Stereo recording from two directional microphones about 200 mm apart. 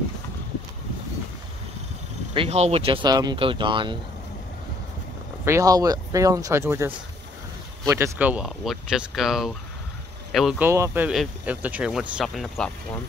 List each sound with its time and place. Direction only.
2.3 s speech: 30° right (ahead or behind)
5.4 s speech: 15° right (ahead or behind)
10.7 s speech: 10° right (ahead or behind)